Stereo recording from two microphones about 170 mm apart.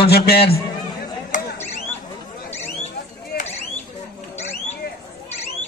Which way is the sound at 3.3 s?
65° left (ahead or behind).